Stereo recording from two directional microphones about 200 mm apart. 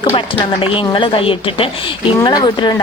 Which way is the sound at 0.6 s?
25° left (ahead or behind).